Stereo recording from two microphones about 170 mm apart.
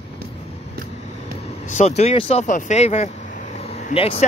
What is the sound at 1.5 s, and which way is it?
Speech, 40° left (ahead or behind).